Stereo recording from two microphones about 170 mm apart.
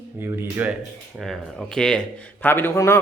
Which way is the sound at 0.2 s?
15° right (ahead or behind).